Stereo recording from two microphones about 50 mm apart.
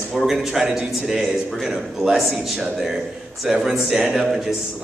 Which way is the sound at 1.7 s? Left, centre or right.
Centre.